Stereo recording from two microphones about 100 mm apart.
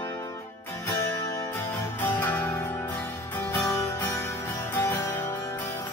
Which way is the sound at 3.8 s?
30° left (ahead or behind).